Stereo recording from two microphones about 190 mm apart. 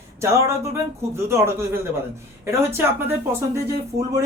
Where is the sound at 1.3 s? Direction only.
15° right (ahead or behind).